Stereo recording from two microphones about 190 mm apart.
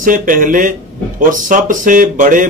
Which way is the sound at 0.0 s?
45° right (ahead or behind).